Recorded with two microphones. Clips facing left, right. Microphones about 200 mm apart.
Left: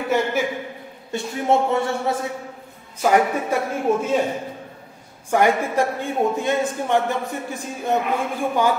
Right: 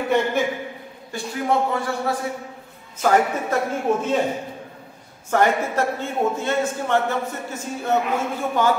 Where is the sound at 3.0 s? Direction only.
10° left (ahead or behind).